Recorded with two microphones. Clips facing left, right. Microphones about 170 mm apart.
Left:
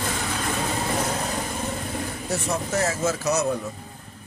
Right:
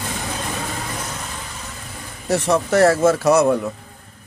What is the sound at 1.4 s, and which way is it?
Vehicle, 50° left (ahead or behind).